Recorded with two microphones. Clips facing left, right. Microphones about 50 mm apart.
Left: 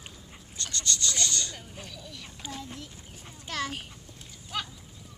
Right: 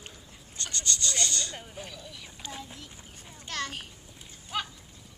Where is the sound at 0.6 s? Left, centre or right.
Right; by 3.8 s centre.